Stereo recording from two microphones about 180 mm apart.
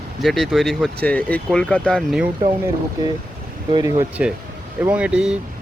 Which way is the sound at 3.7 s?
20° right (ahead or behind).